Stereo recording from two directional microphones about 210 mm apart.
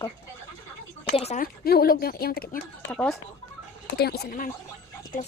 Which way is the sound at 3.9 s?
50° left (ahead or behind).